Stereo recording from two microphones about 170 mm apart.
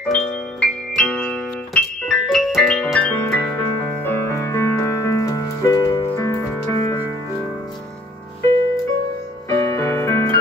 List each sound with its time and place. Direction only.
0.1 s music: 5° left (ahead or behind)
9.5 s music: 20° left (ahead or behind)